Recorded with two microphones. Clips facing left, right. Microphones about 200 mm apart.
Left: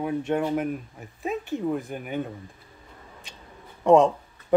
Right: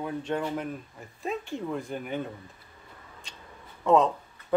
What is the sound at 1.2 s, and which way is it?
Speech, 5° left (ahead or behind).